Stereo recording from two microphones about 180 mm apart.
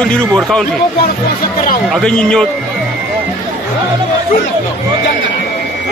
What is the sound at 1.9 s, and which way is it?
Speech, 5° left (ahead or behind).